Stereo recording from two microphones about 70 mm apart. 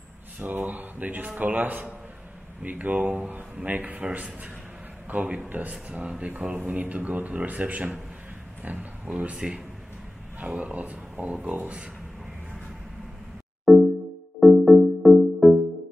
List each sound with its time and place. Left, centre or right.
0.4 s speech: right
13.7 s music: centre